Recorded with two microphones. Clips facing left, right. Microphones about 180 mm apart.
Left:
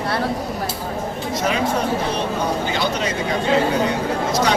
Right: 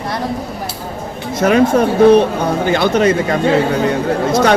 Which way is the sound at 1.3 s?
55° right (ahead or behind).